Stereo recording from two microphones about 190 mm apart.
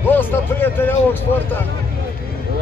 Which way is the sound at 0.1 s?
10° left (ahead or behind).